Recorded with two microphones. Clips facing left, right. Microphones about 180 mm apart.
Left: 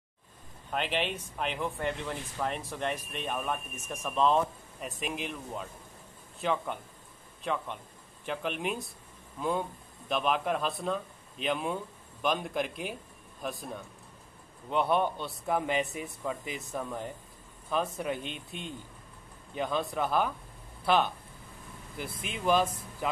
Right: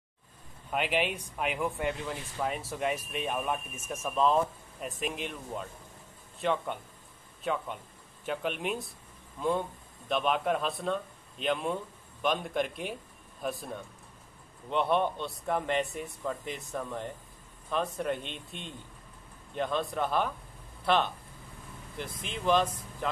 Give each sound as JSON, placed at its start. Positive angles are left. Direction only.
{"t": 0.7, "sound": "speech", "side_deg": -10}
{"t": 10.0, "sound": "speech", "side_deg": 0}